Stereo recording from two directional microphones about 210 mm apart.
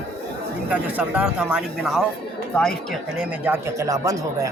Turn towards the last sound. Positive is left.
turn(degrees=-15)  # may be behind; listen again after turning